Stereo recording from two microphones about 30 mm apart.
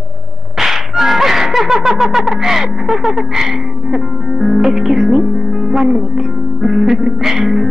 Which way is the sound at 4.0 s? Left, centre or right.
Centre.